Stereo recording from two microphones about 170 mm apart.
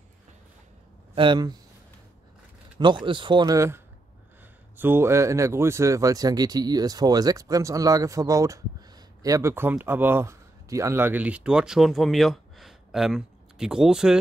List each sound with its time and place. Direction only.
1.1 s speech: 25° right (ahead or behind)
2.8 s speech: 25° right (ahead or behind); by 14.1 s 5° right (ahead or behind)